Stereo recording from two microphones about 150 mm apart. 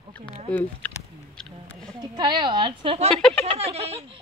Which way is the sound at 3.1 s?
5° left (ahead or behind).